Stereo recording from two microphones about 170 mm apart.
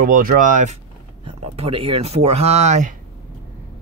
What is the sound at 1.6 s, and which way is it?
Speech, 35° right (ahead or behind).